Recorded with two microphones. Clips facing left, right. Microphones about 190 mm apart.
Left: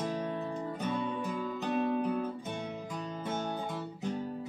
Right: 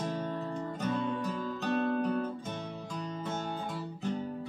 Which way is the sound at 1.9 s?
10° left (ahead or behind).